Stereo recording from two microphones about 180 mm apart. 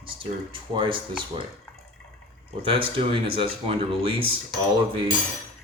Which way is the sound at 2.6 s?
30° right (ahead or behind).